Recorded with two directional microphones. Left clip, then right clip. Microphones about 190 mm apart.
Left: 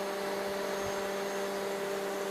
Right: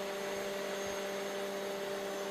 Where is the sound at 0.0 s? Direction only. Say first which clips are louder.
Left 4 dB; 55° right (ahead or behind).